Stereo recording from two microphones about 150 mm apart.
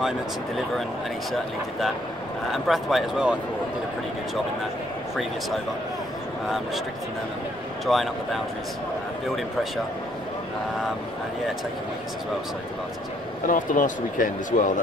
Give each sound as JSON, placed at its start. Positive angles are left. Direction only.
{"t": 2.5, "sound": "speech", "side_deg": 0}
{"t": 7.8, "sound": "speech", "side_deg": 0}
{"t": 13.5, "sound": "speech", "side_deg": 60}